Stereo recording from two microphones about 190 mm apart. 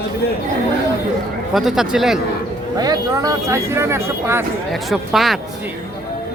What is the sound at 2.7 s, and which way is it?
Speech, 20° right (ahead or behind).